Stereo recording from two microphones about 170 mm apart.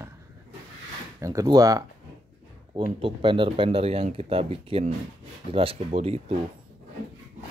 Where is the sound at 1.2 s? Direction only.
20° right (ahead or behind); by 6.3 s 40° right (ahead or behind).